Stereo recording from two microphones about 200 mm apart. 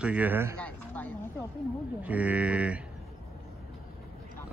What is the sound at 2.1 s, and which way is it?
Speech, 5° right (ahead or behind).